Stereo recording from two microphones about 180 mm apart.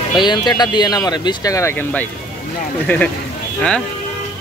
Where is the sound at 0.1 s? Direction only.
25° left (ahead or behind).